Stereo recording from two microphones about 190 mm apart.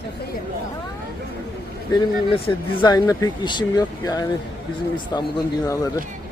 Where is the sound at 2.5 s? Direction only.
20° left (ahead or behind).